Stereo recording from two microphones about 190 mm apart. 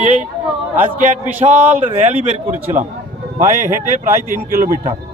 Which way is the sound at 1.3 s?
10° right (ahead or behind).